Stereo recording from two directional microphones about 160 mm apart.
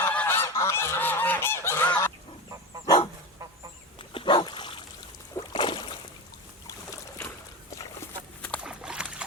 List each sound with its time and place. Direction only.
0.0 s goose: 10° left (ahead or behind)
2.8 s dog: 25° left (ahead or behind)
4.1 s dog: 30° left (ahead or behind)
5.3 s boat: 30° left (ahead or behind)
8.4 s a sound: 10° left (ahead or behind)
8.6 s a sound: 5° right (ahead or behind)